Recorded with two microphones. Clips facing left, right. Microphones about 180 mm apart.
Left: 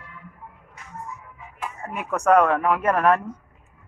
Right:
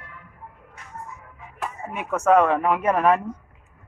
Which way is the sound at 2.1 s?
5° right (ahead or behind).